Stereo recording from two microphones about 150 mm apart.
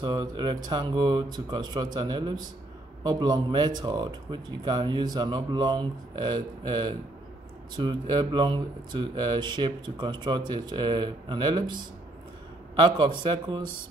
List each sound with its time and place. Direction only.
0.0 s speech: 30° right (ahead or behind)